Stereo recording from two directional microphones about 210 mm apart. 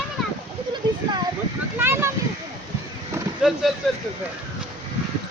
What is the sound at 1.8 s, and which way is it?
Speech, 10° right (ahead or behind).